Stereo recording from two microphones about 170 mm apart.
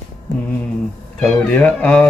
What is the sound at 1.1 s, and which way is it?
Speech, 5° left (ahead or behind).